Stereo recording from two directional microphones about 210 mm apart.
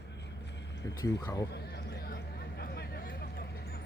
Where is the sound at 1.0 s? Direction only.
15° left (ahead or behind).